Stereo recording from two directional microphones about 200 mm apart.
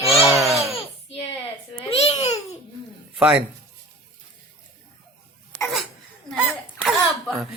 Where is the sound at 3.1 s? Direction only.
5° right (ahead or behind).